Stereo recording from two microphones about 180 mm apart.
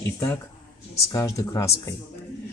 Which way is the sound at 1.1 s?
15° left (ahead or behind).